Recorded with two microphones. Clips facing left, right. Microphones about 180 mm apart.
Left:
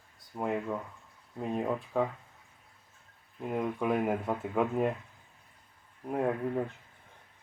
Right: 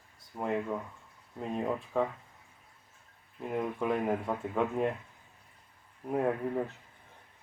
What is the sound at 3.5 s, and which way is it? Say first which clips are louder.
Speech: left 1 dB; 5° left (ahead or behind).